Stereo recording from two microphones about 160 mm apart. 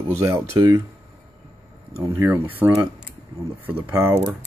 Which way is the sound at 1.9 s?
15° right (ahead or behind).